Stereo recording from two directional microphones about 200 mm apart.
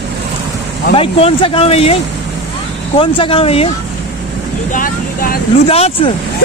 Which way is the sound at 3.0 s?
25° left (ahead or behind).